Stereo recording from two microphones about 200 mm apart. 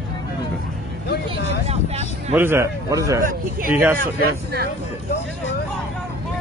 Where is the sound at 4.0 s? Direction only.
50° right (ahead or behind).